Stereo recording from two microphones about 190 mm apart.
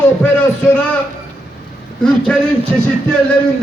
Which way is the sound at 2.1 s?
5° left (ahead or behind).